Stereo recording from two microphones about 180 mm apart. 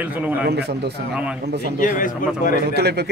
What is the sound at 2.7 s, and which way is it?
Speech, 65° right (ahead or behind).